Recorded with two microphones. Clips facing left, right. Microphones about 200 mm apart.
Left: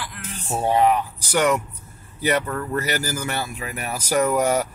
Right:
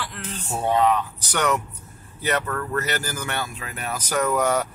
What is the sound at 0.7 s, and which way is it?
Speech, 10° left (ahead or behind).